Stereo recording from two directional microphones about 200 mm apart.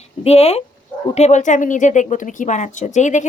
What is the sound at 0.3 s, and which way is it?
Speech, 30° left (ahead or behind).